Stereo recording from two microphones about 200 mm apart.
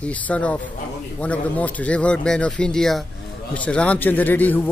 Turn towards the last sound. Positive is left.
turn(degrees=10)  # may be behind; listen again after turning